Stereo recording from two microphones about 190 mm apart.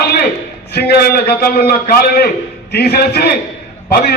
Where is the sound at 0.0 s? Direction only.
55° left (ahead or behind).